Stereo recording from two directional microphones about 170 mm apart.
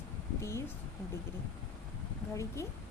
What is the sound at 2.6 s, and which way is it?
Speech, 15° left (ahead or behind).